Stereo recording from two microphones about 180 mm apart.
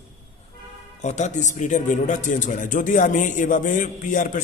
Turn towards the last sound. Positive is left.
turn(degrees=45)  # may be behind; listen again after turning